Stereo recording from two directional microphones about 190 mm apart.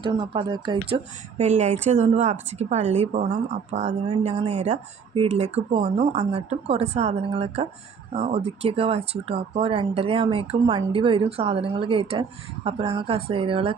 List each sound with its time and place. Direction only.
0.0 s speech: 25° right (ahead or behind)